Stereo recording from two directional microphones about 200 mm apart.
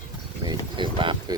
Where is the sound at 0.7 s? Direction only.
25° right (ahead or behind).